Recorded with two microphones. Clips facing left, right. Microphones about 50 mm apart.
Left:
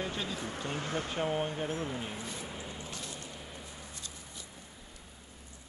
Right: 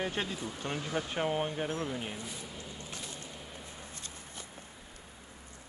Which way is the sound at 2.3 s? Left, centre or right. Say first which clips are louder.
Left 3 dB; left.